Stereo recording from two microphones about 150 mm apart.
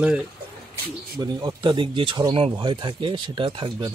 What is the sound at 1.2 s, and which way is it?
Speech, 25° right (ahead or behind).